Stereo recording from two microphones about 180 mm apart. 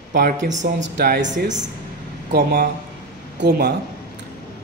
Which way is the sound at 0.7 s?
80° right.